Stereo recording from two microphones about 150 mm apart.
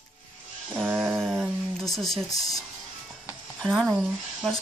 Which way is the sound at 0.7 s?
15° right (ahead or behind).